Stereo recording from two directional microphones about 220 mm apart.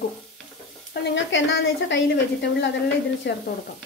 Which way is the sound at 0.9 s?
50° left (ahead or behind).